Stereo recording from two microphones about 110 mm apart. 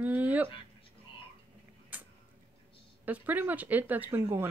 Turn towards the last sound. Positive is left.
turn(degrees=-20)  # may be behind; listen again after turning